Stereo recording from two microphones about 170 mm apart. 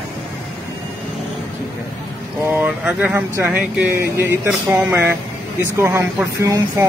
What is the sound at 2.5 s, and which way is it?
Speech, 10° right (ahead or behind).